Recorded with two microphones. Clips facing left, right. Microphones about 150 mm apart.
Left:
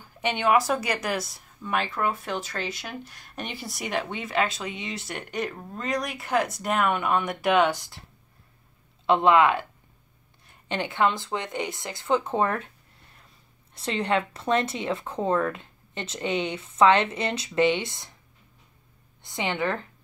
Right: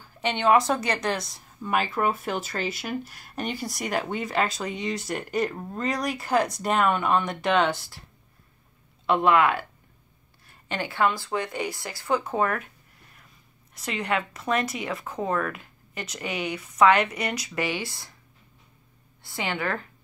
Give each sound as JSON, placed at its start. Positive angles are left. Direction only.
{"t": 0.2, "sound": "a woman's voice", "side_deg": 10}
{"t": 9.0, "sound": "speech", "side_deg": 25}
{"t": 13.7, "sound": "speech", "side_deg": 30}
{"t": 19.2, "sound": "speech", "side_deg": 20}